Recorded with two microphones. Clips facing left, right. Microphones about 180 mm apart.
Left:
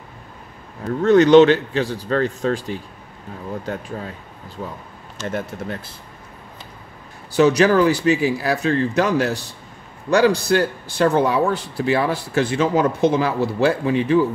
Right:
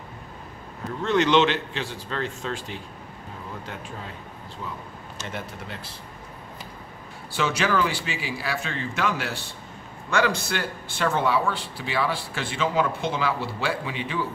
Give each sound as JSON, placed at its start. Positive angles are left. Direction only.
{"t": 1.0, "sound": "speech", "side_deg": 40}
{"t": 5.2, "sound": "speech", "side_deg": 45}
{"t": 7.3, "sound": "speech", "side_deg": 40}